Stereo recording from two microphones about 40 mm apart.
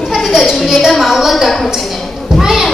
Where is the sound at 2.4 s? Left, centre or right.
Centre.